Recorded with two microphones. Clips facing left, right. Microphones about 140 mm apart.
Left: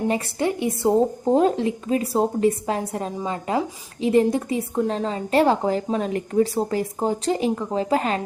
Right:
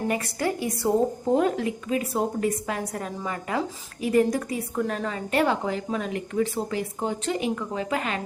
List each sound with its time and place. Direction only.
0.1 s a woman's voice: 25° left (ahead or behind)